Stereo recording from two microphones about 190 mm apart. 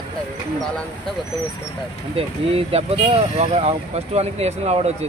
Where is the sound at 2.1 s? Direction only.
30° right (ahead or behind).